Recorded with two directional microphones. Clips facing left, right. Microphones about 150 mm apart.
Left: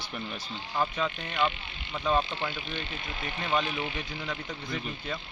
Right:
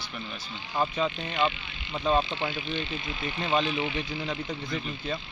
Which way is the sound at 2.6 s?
50° left (ahead or behind).